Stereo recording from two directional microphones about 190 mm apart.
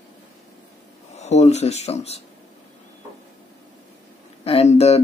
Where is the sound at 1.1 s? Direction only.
35° left (ahead or behind).